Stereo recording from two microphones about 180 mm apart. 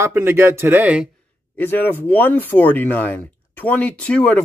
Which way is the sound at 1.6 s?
10° left (ahead or behind).